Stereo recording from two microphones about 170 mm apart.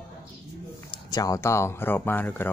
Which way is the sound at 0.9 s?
20° left (ahead or behind).